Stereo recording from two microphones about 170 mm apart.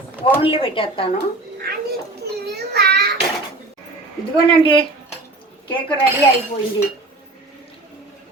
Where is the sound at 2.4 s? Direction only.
75° right (ahead or behind).